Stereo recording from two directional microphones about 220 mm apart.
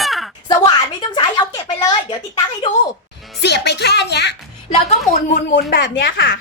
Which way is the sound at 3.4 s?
50° left (ahead or behind).